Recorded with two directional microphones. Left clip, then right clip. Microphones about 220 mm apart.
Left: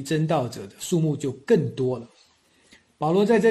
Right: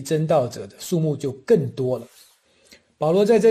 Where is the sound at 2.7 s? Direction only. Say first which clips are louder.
Right 3 dB; 30° right (ahead or behind).